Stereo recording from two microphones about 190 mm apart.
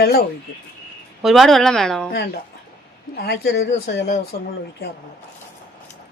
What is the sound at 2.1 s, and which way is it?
Speech, 55° left (ahead or behind).